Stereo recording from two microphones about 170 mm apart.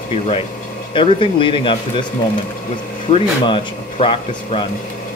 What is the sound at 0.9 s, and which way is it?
Speech, 30° left (ahead or behind).